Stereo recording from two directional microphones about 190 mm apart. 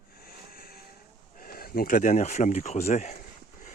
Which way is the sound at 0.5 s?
50° left (ahead or behind).